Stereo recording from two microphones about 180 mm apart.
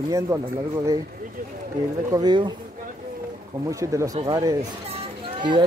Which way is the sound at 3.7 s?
15° right (ahead or behind).